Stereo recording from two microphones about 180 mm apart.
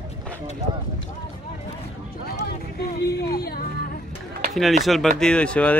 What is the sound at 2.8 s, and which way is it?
Speech, 60° left (ahead or behind).